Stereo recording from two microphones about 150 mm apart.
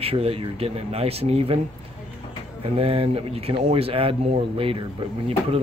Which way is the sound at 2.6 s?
40° right (ahead or behind).